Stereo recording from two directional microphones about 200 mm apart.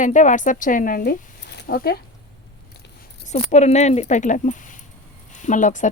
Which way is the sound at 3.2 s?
35° left (ahead or behind).